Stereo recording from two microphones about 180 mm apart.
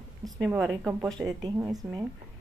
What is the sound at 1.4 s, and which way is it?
Speech, 20° right (ahead or behind).